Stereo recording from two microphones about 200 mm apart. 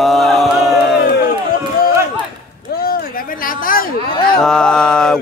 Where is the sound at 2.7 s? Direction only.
50° left (ahead or behind).